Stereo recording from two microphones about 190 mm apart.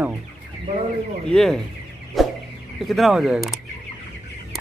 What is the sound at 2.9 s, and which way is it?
Speech, centre (ahead or behind).